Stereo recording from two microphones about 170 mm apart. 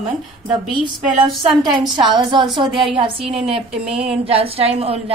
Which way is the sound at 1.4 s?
30° right (ahead or behind).